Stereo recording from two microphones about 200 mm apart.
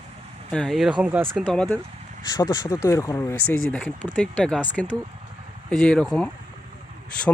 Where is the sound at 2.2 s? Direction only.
20° left (ahead or behind).